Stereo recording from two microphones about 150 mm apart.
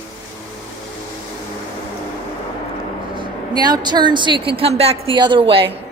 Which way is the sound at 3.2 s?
30° right (ahead or behind).